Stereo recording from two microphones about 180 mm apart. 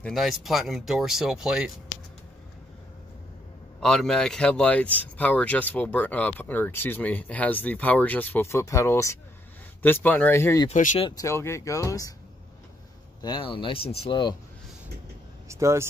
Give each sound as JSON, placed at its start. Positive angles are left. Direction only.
{"t": 0.0, "sound": "speech", "side_deg": 0}
{"t": 3.8, "sound": "speech", "side_deg": 0}
{"t": 10.7, "sound": "speech", "side_deg": 45}
{"t": 11.0, "sound": "speech", "side_deg": 20}
{"t": 13.2, "sound": "speech", "side_deg": 25}
{"t": 15.4, "sound": "speech", "side_deg": -15}